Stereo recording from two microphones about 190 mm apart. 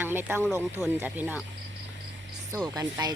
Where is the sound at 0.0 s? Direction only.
10° right (ahead or behind).